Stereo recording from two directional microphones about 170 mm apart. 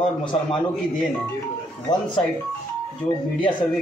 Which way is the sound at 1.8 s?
25° left (ahead or behind).